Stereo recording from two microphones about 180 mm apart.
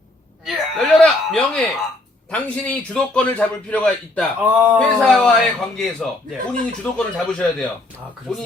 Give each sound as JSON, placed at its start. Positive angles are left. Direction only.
{"t": 0.4, "sound": "a sound", "side_deg": 0}
{"t": 2.3, "sound": "a man's voice", "side_deg": 5}
{"t": 4.4, "sound": "speech", "side_deg": -10}
{"t": 4.8, "sound": "a man's voice", "side_deg": 5}